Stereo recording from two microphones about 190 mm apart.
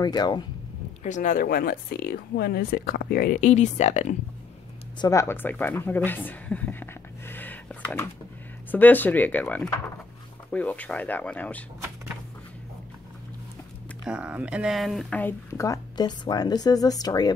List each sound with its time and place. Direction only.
0.0 s speech: 20° left (ahead or behind)
1.0 s speech: 40° left (ahead or behind)
4.9 s speech: 15° left (ahead or behind)
8.7 s speech: 10° left (ahead or behind)
14.0 s speech: 5° right (ahead or behind); by 17.3 s 20° left (ahead or behind)